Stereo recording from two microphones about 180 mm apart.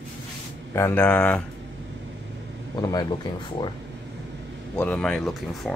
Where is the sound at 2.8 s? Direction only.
20° left (ahead or behind).